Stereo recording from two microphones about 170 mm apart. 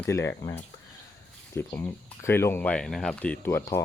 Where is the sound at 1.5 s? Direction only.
15° left (ahead or behind).